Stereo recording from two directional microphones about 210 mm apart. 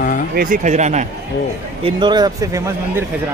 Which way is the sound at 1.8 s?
20° right (ahead or behind).